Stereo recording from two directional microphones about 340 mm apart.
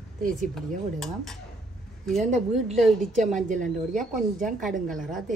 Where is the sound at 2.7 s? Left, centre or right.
Centre.